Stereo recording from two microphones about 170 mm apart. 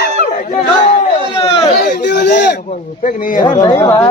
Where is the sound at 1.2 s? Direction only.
30° left (ahead or behind).